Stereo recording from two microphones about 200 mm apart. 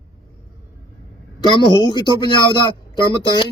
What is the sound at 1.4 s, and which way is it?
Speech, 20° left (ahead or behind).